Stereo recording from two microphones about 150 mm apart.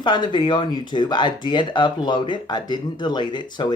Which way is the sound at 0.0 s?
30° left (ahead or behind).